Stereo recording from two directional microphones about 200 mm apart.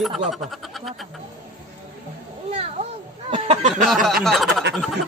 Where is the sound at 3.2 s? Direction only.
30° right (ahead or behind).